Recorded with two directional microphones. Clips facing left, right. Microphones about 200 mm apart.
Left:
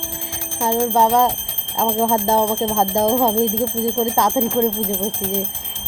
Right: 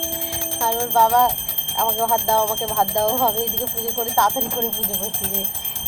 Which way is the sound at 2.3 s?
20° left (ahead or behind).